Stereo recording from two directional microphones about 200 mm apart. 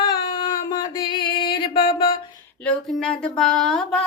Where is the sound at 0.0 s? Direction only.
25° left (ahead or behind).